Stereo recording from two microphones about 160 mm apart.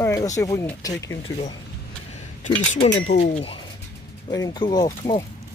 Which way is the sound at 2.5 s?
45° left (ahead or behind).